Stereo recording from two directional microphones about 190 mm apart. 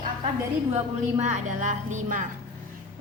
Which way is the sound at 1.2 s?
40° right (ahead or behind).